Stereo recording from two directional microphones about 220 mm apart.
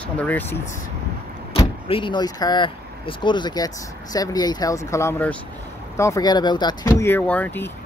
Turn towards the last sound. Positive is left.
turn(degrees=10)  # may be behind; listen again after turning